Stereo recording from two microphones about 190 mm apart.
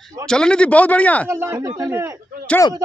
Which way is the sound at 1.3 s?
15° right (ahead or behind).